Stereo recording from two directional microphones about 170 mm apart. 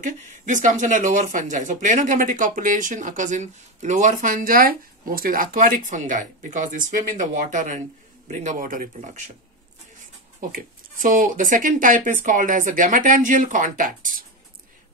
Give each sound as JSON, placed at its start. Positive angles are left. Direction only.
{"t": 0.0, "sound": "speech", "side_deg": -50}
{"t": 10.5, "sound": "speech", "side_deg": -50}